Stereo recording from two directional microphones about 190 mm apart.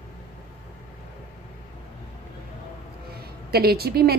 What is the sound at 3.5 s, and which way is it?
Speech, 55° right (ahead or behind).